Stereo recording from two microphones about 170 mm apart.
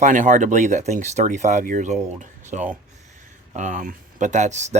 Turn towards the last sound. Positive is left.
turn(degrees=-45)  # may be behind; listen again after turning